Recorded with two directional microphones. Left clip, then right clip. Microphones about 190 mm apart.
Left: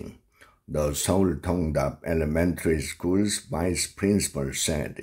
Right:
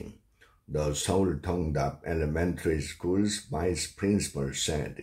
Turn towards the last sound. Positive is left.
turn(degrees=30)  # may be behind; listen again after turning